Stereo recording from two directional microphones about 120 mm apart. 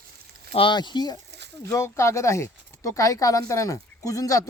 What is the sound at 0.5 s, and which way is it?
Speech, 40° left (ahead or behind).